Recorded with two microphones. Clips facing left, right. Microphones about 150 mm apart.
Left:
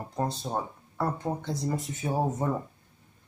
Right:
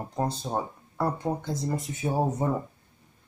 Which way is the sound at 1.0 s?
Centre (ahead or behind).